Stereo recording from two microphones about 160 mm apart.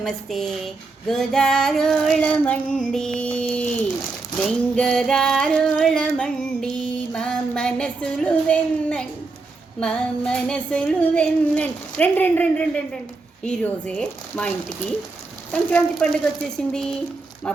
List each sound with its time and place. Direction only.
0.0 s female singing: centre (ahead or behind)
9.8 s music: 5° left (ahead or behind)
13.4 s female singing: 5° left (ahead or behind)
15.7 s female singing: 5° left (ahead or behind)